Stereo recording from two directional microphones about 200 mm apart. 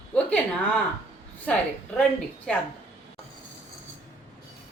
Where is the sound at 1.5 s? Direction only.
5° left (ahead or behind).